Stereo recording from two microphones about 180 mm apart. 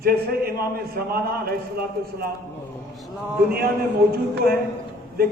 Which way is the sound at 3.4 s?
60° right (ahead or behind).